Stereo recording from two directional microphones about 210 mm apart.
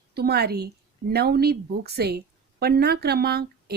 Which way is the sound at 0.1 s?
50° right (ahead or behind).